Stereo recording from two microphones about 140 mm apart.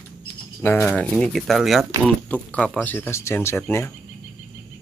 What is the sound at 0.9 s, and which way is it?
Speech, 5° left (ahead or behind).